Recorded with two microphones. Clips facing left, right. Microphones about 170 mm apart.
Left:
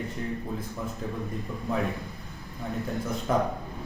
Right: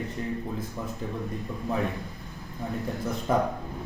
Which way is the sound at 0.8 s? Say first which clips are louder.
Left 1 dB; centre (ahead or behind).